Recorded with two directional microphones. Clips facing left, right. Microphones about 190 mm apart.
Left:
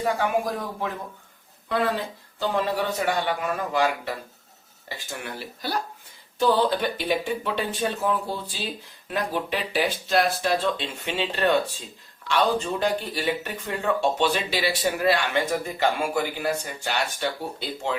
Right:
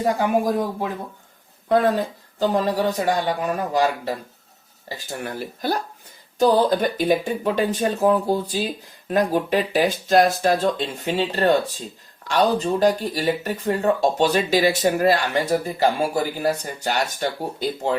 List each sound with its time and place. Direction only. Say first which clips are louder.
1.7 s speech: right 7 dB; 45° right (ahead or behind)